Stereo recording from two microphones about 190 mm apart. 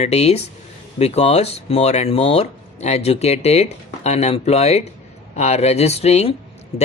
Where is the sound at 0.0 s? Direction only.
35° left (ahead or behind).